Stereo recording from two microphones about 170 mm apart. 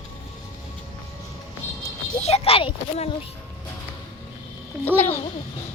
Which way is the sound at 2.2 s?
35° left (ahead or behind).